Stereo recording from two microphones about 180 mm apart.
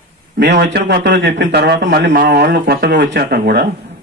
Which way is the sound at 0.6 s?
65° right (ahead or behind).